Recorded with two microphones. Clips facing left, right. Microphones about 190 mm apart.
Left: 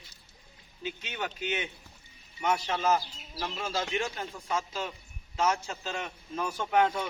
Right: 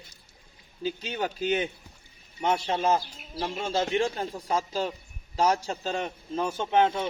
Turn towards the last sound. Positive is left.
turn(degrees=-25)  # may be behind; listen again after turning